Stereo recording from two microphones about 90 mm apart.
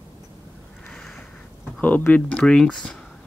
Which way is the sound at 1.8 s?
20° left (ahead or behind).